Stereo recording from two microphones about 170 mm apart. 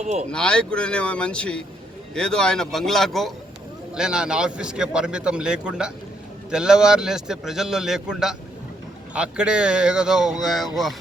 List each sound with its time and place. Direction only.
0.0 s speech: 40° right (ahead or behind)
0.3 s speech: 5° left (ahead or behind)